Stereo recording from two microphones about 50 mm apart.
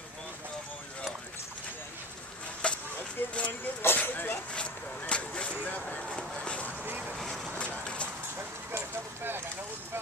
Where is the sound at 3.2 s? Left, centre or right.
Left.